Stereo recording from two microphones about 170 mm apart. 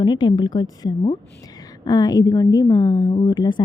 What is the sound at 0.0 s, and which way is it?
A woman's voice, 25° left (ahead or behind).